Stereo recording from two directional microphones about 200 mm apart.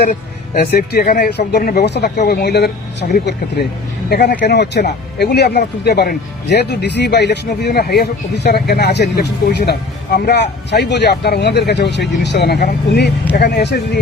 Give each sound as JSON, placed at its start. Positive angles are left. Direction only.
{"t": 0.6, "sound": "speech", "side_deg": 55}